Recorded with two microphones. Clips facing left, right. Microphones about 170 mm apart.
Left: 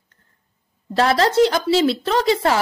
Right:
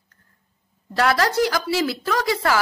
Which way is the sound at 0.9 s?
25° left (ahead or behind).